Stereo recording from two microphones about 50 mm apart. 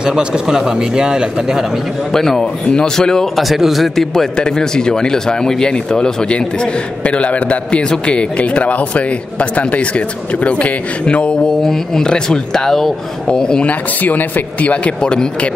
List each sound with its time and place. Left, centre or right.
0.0 s a man's voice: centre
2.1 s speech: centre
3.3 s a man's voice: centre; by 11.3 s left
11.6 s speech: centre
13.7 s a man's voice: left; by 15.5 s centre